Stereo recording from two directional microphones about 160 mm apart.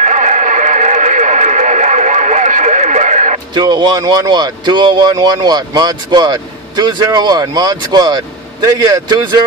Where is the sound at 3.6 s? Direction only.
25° right (ahead or behind).